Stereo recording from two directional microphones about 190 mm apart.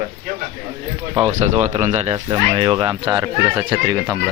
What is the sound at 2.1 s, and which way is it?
Speech, 20° right (ahead or behind).